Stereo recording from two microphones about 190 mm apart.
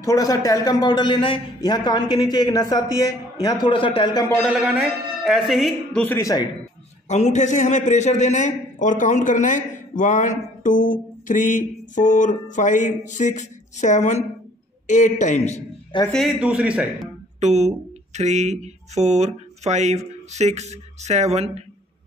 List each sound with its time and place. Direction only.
0.0 s a man's voice: 20° left (ahead or behind)
4.5 s a man's voice: 5° right (ahead or behind)
6.0 s speech: 15° left (ahead or behind)
7.1 s a man's voice: 35° left (ahead or behind)
16.1 s a man's voice: centre (ahead or behind)
17.4 s speech: 35° right (ahead or behind)